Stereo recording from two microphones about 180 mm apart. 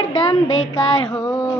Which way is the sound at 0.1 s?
25° left (ahead or behind).